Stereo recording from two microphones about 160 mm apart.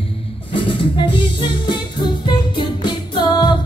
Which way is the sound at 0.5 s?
30° left (ahead or behind).